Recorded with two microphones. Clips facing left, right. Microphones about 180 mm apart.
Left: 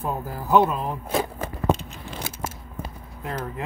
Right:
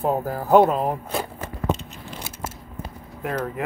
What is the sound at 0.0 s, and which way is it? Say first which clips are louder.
Speech: right 6 dB; 55° right (ahead or behind).